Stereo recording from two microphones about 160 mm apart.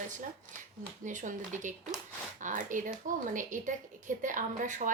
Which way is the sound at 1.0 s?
50° right (ahead or behind).